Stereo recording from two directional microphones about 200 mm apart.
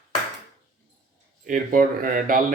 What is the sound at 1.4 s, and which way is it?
Speech, 45° right (ahead or behind).